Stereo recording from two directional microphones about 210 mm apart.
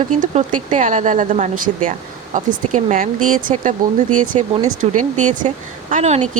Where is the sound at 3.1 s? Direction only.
90° right.